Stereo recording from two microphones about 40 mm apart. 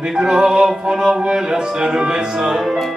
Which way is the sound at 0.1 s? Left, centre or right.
Centre.